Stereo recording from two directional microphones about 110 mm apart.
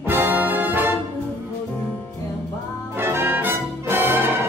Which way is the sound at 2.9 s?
20° right (ahead or behind).